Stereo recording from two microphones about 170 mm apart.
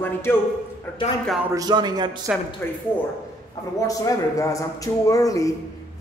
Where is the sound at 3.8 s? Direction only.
20° left (ahead or behind).